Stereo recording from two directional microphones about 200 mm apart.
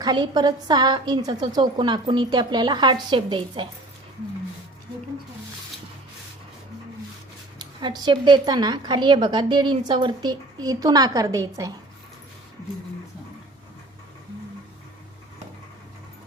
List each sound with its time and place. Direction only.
0.0 s a woman's voice: 20° right (ahead or behind)
7.6 s a woman's voice: 20° right (ahead or behind)